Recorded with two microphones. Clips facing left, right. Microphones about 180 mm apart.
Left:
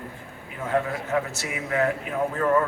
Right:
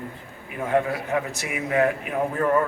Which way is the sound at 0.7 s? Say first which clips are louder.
Right 2 dB; 20° right (ahead or behind).